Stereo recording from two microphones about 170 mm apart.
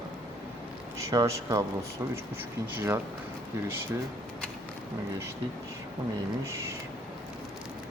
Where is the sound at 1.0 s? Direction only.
20° right (ahead or behind).